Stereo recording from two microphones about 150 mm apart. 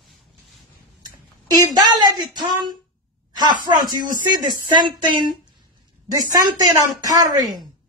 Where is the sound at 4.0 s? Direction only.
65° right (ahead or behind).